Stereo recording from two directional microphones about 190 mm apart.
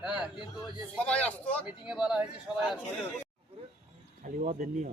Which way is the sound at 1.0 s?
5° left (ahead or behind).